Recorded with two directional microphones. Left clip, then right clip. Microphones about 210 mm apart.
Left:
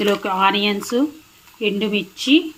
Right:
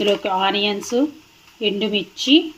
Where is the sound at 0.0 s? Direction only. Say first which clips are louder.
Left 1 dB; 20° left (ahead or behind).